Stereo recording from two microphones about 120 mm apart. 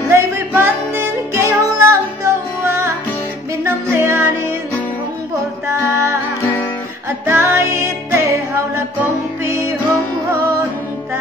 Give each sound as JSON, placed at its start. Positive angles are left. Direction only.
{"t": 0.1, "sound": "music", "side_deg": -20}
{"t": 5.7, "sound": "music", "side_deg": -20}
{"t": 7.2, "sound": "music", "side_deg": -25}